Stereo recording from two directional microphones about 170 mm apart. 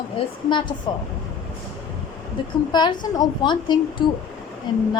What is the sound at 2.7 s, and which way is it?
A woman's voice, 25° left (ahead or behind).